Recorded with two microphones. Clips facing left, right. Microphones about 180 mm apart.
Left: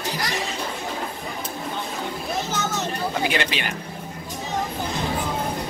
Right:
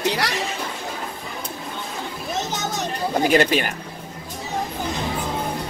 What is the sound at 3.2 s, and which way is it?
Speech, 40° right (ahead or behind).